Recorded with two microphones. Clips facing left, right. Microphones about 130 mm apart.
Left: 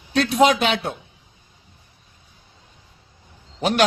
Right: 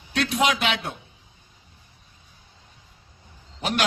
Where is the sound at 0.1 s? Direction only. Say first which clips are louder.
Left 6 dB; 35° left (ahead or behind).